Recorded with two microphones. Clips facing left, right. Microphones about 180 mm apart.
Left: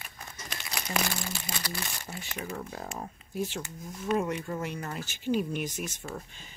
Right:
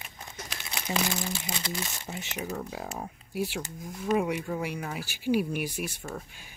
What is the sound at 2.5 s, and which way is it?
Speech, 5° right (ahead or behind).